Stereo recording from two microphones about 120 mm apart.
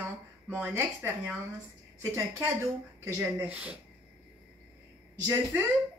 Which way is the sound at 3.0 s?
15° right (ahead or behind).